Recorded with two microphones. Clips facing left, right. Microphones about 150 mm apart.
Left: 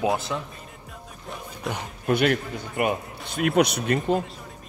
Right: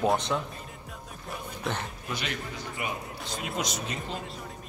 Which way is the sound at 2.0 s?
55° left (ahead or behind).